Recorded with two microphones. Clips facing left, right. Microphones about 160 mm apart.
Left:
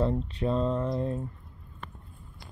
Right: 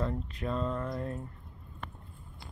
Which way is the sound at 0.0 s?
30° left (ahead or behind).